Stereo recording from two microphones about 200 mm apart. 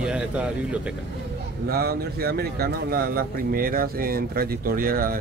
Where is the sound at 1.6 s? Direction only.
50° right (ahead or behind).